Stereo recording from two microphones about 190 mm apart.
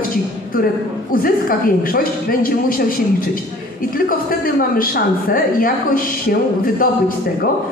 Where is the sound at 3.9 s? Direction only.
50° left (ahead or behind).